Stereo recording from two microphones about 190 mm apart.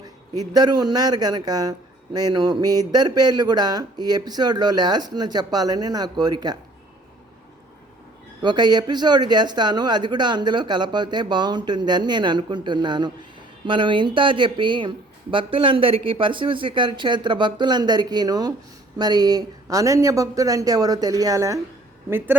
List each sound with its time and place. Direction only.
0.0 s speech: 20° right (ahead or behind)
8.4 s speech: 20° right (ahead or behind)